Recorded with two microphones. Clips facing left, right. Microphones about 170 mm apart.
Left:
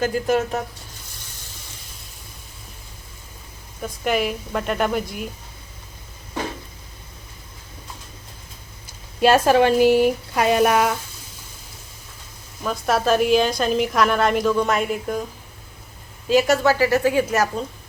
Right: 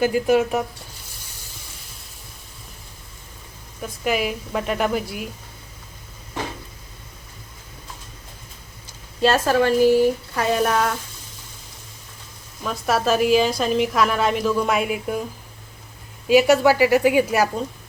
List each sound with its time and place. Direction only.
0.0 s a woman's voice: 10° right (ahead or behind)
3.8 s a woman's voice: centre (ahead or behind)
9.2 s speech: 15° left (ahead or behind)
12.6 s a woman's voice: centre (ahead or behind)
16.3 s a woman's voice: 10° right (ahead or behind)